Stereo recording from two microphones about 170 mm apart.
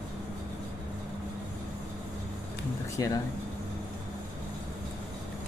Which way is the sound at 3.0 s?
20° left (ahead or behind).